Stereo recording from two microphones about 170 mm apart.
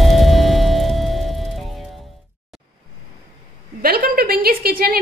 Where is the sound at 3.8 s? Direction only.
60° right (ahead or behind).